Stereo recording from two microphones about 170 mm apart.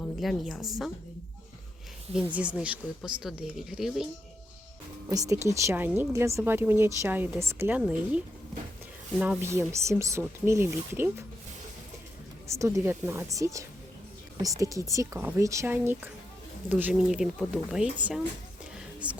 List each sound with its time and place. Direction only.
0.0 s a woman's voice: centre (ahead or behind)
2.1 s speech: 5° right (ahead or behind)
5.0 s speech: 20° right (ahead or behind)
9.4 s speech: 15° right (ahead or behind)
12.5 s speech: 15° right (ahead or behind)